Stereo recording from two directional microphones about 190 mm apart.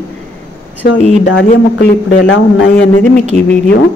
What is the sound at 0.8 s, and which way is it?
Speech, 50° left (ahead or behind).